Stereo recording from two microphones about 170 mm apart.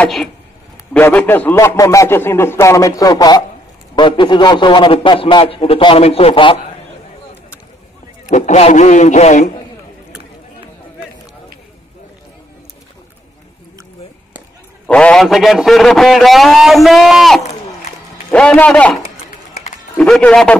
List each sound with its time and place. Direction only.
0.0 s a man's voice: centre (ahead or behind); by 6.6 s 35° left (ahead or behind)
8.3 s speech: 45° left (ahead or behind)
14.9 s a man's voice: 5° left (ahead or behind)